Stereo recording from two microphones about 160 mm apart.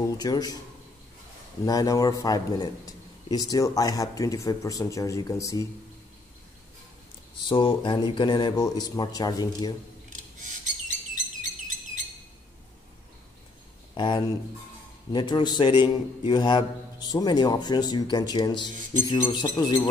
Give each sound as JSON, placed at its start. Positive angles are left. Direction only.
{"t": 0.2, "sound": "a man's voice", "side_deg": 20}
{"t": 1.7, "sound": "a man's voice", "side_deg": 20}
{"t": 7.4, "sound": "a man's voice", "side_deg": 30}
{"t": 10.4, "sound": "bird", "side_deg": -50}
{"t": 13.9, "sound": "a man's voice", "side_deg": 30}